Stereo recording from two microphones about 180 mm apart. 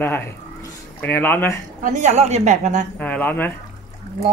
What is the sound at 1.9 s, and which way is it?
Speech, 40° right (ahead or behind).